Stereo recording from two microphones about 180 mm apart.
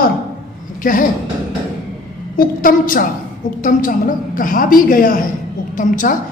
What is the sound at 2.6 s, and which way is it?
A woman's voice, 50° left (ahead or behind).